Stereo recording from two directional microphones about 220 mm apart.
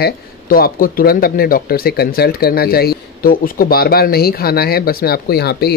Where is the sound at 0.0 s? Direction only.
45° left (ahead or behind).